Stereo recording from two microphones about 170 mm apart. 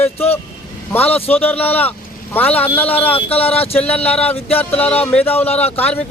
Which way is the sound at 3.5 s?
35° left (ahead or behind).